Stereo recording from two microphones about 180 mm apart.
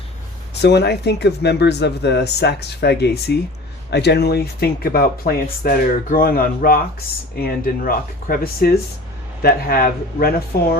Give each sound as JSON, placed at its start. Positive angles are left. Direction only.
{"t": 0.6, "sound": "speech", "side_deg": 70}